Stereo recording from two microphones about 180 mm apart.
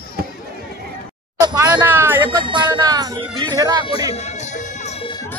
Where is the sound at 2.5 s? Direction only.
25° right (ahead or behind).